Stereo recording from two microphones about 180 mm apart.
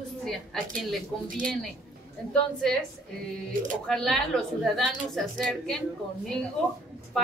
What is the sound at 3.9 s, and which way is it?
A woman's voice, 5° left (ahead or behind).